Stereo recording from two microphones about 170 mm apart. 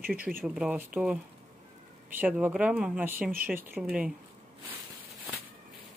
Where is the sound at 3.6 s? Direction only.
10° right (ahead or behind).